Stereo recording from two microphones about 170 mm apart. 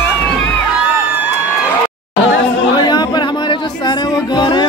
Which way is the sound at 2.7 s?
25° left (ahead or behind).